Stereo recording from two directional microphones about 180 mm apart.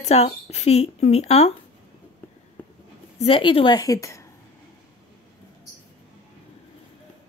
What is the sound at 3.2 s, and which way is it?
A woman's voice, 30° left (ahead or behind).